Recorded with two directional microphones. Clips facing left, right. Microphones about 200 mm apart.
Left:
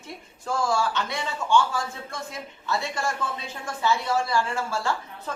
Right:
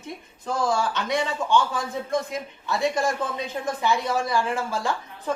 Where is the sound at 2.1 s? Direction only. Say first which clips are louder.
Right 9 dB; 15° right (ahead or behind).